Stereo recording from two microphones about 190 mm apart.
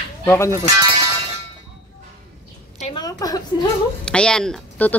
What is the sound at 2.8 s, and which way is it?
Speech, 25° left (ahead or behind).